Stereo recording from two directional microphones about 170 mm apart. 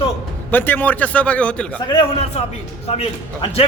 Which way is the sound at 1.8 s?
35° left (ahead or behind).